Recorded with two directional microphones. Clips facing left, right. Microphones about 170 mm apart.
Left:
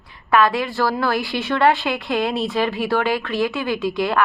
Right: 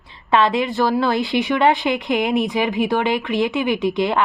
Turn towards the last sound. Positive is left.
turn(degrees=-20)  # may be behind; listen again after turning